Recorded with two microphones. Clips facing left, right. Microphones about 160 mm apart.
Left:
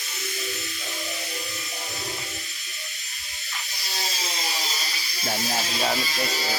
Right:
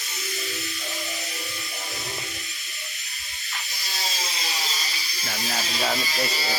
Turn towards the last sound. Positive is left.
turn(degrees=20)  # may be behind; listen again after turning